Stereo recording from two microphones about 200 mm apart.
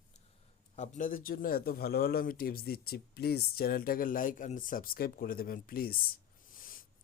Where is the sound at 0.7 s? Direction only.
35° left (ahead or behind).